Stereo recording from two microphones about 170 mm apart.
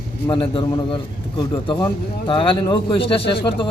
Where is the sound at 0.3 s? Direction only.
30° left (ahead or behind).